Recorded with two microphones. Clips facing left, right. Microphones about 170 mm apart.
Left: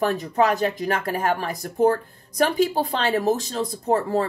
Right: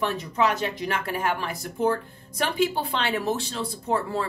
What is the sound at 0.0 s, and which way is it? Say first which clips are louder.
A woman's voice: left 4 dB; 45° left (ahead or behind).